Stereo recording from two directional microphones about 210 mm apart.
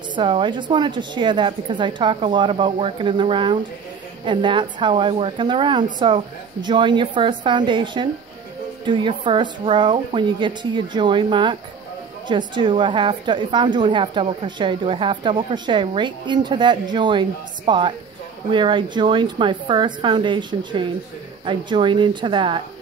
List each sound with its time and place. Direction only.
0.1 s a woman's voice: 20° right (ahead or behind)